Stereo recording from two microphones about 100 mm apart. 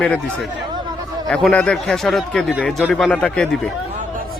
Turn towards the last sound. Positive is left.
turn(degrees=10)  # may be behind; listen again after turning